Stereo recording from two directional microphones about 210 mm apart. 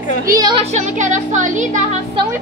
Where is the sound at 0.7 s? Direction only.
35° right (ahead or behind).